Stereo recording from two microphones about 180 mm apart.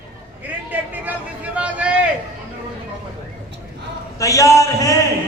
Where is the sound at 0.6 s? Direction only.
10° right (ahead or behind).